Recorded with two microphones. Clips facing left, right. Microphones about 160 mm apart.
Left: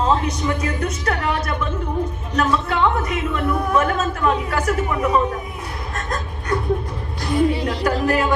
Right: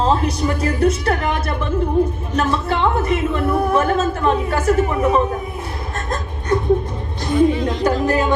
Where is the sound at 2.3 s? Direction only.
30° right (ahead or behind).